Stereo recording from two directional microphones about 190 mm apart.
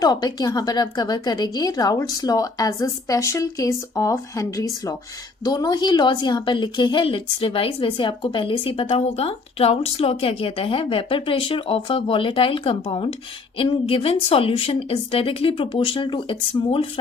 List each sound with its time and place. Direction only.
0.0 s a woman's voice: 20° left (ahead or behind)